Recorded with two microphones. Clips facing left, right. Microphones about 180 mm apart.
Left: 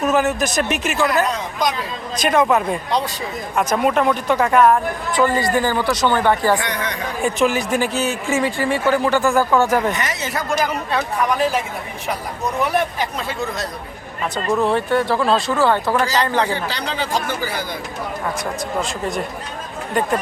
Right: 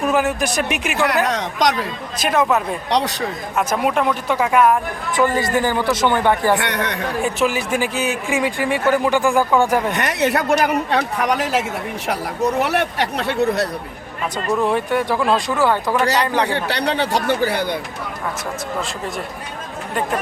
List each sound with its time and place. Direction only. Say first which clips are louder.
0.0 s speech: left 1 dB; 10° right (ahead or behind)
1.2 s speech: right 2 dB; 75° right (ahead or behind)
2.1 s speech: left 2 dB; 5° right (ahead or behind)
2.9 s a man's voice: right 6 dB; 80° right
3.5 s speech: left 2 dB; 5° right (ahead or behind)
5.4 s speech: even; 20° right (ahead or behind)
6.6 s speech: right 2 dB; 65° right (ahead or behind)
7.2 s speech: left 2 dB; 5° right (ahead or behind)
9.9 s speech: right 5 dB; 60° right (ahead or behind)
12.6 s speech: even; 75° right (ahead or behind)
14.3 s speech: left 1 dB; 10° right (ahead or behind)
16.5 s speech: right 4 dB; 65° right (ahead or behind)
18.8 s speech: left 3 dB; centre (ahead or behind)